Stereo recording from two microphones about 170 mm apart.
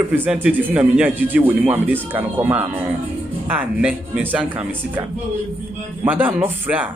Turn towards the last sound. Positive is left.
turn(degrees=-10)  # may be behind; listen again after turning